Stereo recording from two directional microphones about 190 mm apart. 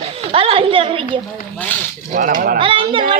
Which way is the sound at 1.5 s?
10° left (ahead or behind).